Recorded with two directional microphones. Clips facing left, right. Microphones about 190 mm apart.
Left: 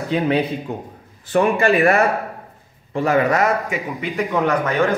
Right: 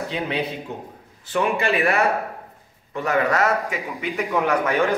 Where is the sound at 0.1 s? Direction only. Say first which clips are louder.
Left 9 dB; 45° left (ahead or behind).